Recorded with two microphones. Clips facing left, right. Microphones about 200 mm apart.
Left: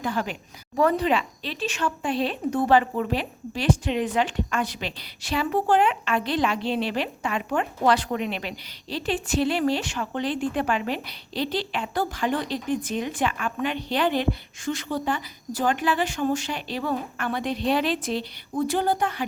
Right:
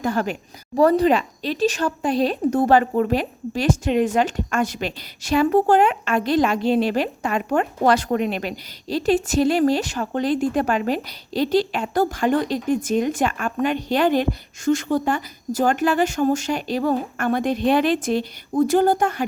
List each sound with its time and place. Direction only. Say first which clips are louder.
0.0 s a woman's voice: right 5 dB; 45° right (ahead or behind)